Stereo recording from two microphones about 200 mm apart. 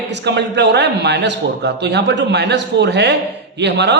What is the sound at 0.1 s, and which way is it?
A man's voice, 60° right (ahead or behind).